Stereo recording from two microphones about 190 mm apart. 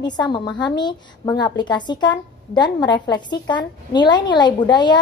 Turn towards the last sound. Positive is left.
turn(degrees=25)  # may be behind; listen again after turning